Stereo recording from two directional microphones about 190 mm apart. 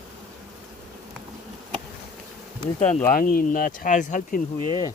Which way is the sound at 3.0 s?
45° left (ahead or behind).